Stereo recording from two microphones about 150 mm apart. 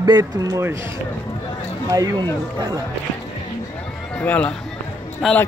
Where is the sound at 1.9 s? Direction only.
25° right (ahead or behind).